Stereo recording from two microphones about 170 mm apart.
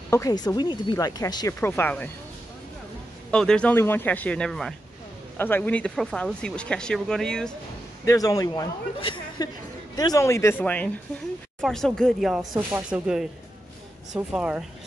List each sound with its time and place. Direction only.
0.1 s speech: 20° left (ahead or behind)
1.6 s a man's voice: 10° left (ahead or behind)
3.3 s a man's voice: 5° left (ahead or behind)
8.0 s a man's voice: 20° left (ahead or behind); by 14.6 s 5° right (ahead or behind)